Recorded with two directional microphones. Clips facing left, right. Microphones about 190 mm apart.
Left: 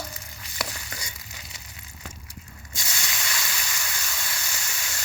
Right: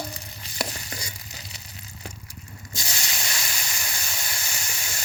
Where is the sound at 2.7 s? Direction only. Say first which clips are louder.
Right 1 dB; 35° right (ahead or behind).